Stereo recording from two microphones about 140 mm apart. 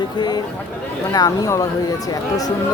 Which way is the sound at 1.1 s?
25° left (ahead or behind).